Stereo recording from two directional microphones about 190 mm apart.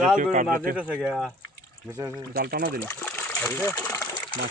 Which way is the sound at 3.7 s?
15° left (ahead or behind).